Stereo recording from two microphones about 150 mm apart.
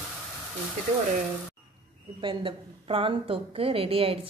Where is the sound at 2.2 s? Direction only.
35° right (ahead or behind).